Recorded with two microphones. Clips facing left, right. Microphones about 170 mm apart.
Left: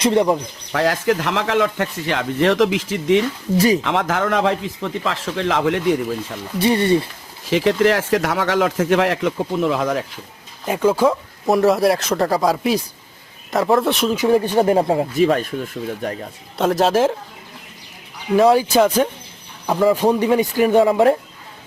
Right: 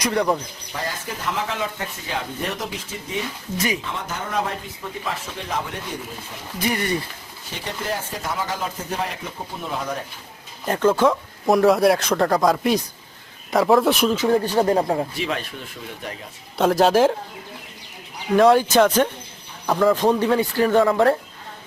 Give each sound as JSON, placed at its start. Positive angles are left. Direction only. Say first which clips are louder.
{"t": 0.0, "sound": "speech", "louder": "left 5 dB", "side_deg": 25}
{"t": 0.7, "sound": "speech", "louder": "left 13 dB", "side_deg": 90}
{"t": 6.6, "sound": "speech", "louder": "left 8 dB", "side_deg": 30}
{"t": 7.4, "sound": "speech", "louder": "left 14 dB", "side_deg": 90}
{"t": 10.7, "sound": "speech", "louder": "left 2 dB", "side_deg": 10}
{"t": 14.2, "sound": "speech", "louder": "left 3 dB", "side_deg": 15}
{"t": 15.1, "sound": "speech", "louder": "left 10 dB", "side_deg": 45}
{"t": 16.6, "sound": "speech", "louder": "even", "side_deg": 0}
{"t": 18.3, "sound": "speech", "louder": "left 1 dB", "side_deg": 5}